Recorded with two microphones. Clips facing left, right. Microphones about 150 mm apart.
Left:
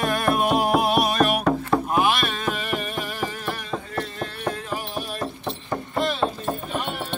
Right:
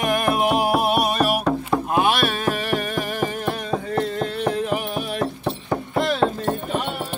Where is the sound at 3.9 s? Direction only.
25° right (ahead or behind).